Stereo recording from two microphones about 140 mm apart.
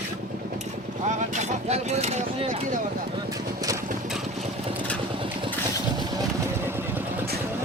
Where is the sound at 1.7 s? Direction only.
50° right (ahead or behind).